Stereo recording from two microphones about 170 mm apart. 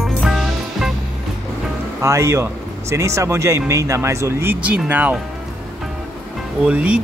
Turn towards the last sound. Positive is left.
turn(degrees=-5)  # may be behind; listen again after turning